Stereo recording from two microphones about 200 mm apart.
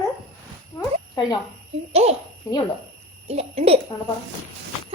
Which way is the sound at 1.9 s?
30° right (ahead or behind).